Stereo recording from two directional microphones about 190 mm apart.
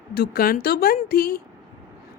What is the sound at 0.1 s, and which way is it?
A woman's voice, 55° left (ahead or behind).